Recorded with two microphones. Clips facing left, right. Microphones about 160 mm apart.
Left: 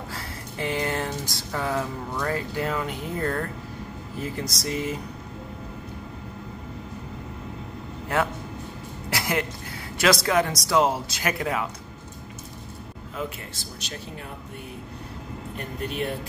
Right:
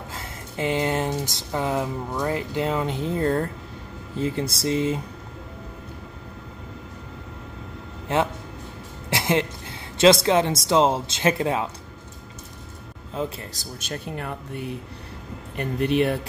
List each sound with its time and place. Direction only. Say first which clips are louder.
0.1 s speech: even; 20° right (ahead or behind)
8.1 s speech: right 2 dB; 20° right (ahead or behind)
9.1 s music: right 4 dB; 25° right (ahead or behind)
9.9 s speech: right 5 dB; 25° right (ahead or behind)
13.1 s speech: right 4 dB; 30° right (ahead or behind)
13.6 s speech: right 4 dB; 50° right (ahead or behind)
15.5 s speech: right 10 dB; 75° right (ahead or behind)